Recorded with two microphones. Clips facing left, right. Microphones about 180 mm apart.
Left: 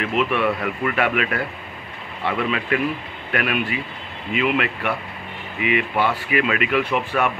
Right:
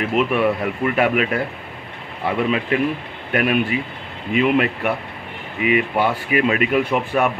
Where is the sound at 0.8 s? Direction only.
40° right (ahead or behind).